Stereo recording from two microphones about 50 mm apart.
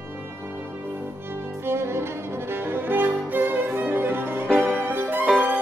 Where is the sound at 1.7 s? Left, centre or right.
Right.